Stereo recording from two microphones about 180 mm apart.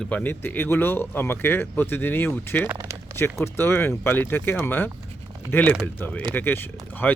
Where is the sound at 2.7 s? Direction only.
15° right (ahead or behind).